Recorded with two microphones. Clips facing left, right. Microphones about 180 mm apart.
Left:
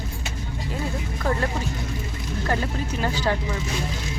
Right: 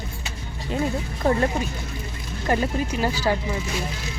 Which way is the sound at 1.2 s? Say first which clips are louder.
Right 4 dB; 20° right (ahead or behind).